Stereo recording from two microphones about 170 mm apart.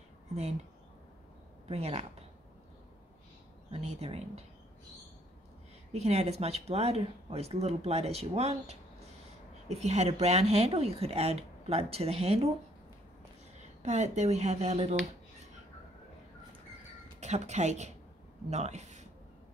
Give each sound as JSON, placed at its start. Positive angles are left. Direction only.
{"t": 1.7, "sound": "speech", "side_deg": -35}
{"t": 3.7, "sound": "speech", "side_deg": -35}
{"t": 5.9, "sound": "speech", "side_deg": -40}
{"t": 13.8, "sound": "speech", "side_deg": -45}
{"t": 17.2, "sound": "speech", "side_deg": -40}